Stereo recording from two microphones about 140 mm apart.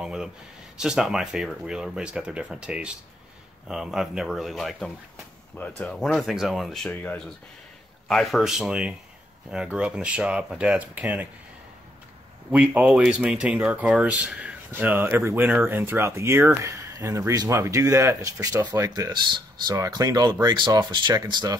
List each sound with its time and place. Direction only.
0.0 s a sound: 5° right (ahead or behind)
0.7 s speech: 5° right (ahead or behind); by 7.3 s 10° left (ahead or behind)
8.1 s speech: centre (ahead or behind)
12.4 s speech: 10° right (ahead or behind); by 21.5 s 30° right (ahead or behind)